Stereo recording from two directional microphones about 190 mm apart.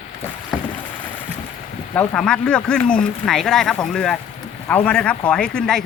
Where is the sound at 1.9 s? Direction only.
5° left (ahead or behind).